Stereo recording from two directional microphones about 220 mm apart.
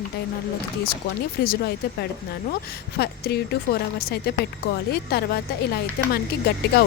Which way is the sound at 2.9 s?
45° left (ahead or behind).